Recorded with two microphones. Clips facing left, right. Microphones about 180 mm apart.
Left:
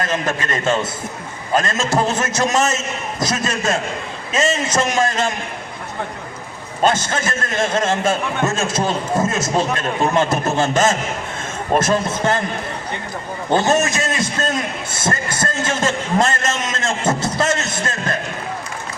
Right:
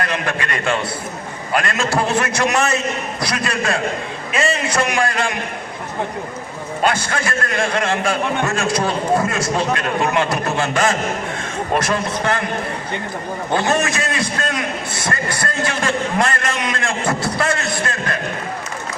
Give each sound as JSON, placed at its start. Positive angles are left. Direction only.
{"t": 0.0, "sound": "a man's voice", "side_deg": 25}
{"t": 1.5, "sound": "a man's voice", "side_deg": 20}
{"t": 6.8, "sound": "a man's voice", "side_deg": 20}
{"t": 13.5, "sound": "a man's voice", "side_deg": 25}